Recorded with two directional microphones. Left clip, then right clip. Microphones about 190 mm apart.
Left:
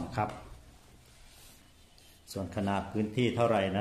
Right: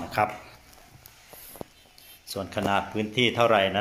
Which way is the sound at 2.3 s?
15° right (ahead or behind).